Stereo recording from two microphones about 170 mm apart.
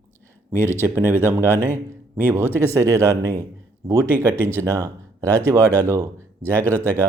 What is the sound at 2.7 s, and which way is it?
Speech, 20° right (ahead or behind).